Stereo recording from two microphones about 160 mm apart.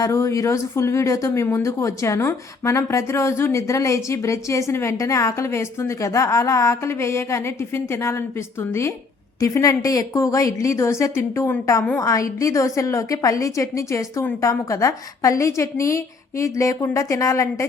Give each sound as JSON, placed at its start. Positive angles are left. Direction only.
{"t": 0.0, "sound": "speech", "side_deg": 20}
{"t": 9.4, "sound": "a woman's voice", "side_deg": 20}